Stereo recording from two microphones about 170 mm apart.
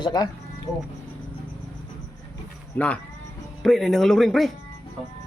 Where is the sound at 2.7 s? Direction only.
10° left (ahead or behind).